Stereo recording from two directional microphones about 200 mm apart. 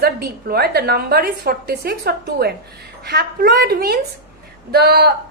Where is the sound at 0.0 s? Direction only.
50° right (ahead or behind).